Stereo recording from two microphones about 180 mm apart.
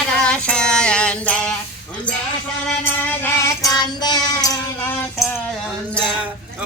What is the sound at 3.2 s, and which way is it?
Music, 15° left (ahead or behind).